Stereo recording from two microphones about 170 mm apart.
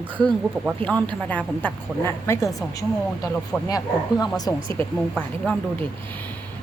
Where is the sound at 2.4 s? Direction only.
Centre (ahead or behind).